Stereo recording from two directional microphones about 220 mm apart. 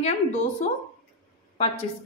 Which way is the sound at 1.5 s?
25° left (ahead or behind).